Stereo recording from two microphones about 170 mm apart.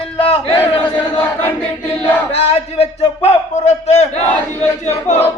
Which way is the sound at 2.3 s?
40° left (ahead or behind).